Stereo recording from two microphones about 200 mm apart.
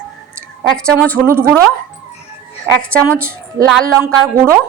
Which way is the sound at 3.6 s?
10° right (ahead or behind).